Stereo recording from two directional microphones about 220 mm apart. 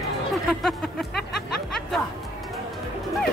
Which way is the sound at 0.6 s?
Centre (ahead or behind).